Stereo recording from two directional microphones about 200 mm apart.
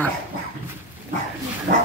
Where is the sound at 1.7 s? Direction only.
45° right (ahead or behind).